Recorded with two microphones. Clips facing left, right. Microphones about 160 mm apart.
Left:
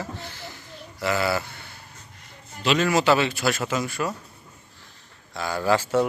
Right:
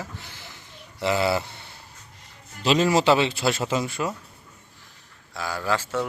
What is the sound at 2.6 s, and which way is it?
Speech, 30° right (ahead or behind).